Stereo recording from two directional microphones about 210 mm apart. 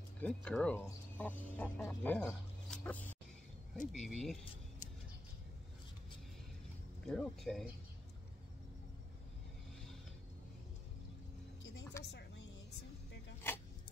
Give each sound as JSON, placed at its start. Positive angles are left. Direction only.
{"t": 0.2, "sound": "speech", "side_deg": 5}
{"t": 3.7, "sound": "speech", "side_deg": 40}
{"t": 4.0, "sound": "speech", "side_deg": 0}
{"t": 7.1, "sound": "speech", "side_deg": 0}
{"t": 12.0, "sound": "a sound", "side_deg": 55}